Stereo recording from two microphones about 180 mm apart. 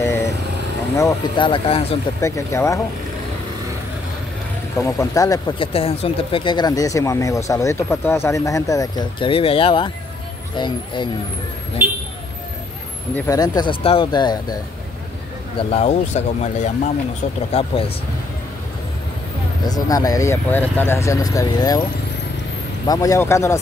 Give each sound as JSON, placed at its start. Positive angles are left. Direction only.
{"t": 0.9, "sound": "speech", "side_deg": 20}
{"t": 2.1, "sound": "speech", "side_deg": 15}
{"t": 4.7, "sound": "speech", "side_deg": 15}
{"t": 5.6, "sound": "speech", "side_deg": 30}
{"t": 13.1, "sound": "speech", "side_deg": 20}
{"t": 15.7, "sound": "speech", "side_deg": 40}
{"t": 19.6, "sound": "speech", "side_deg": 20}
{"t": 22.8, "sound": "speech", "side_deg": 20}